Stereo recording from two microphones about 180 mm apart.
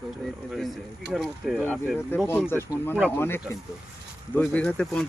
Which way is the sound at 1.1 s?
Centre (ahead or behind).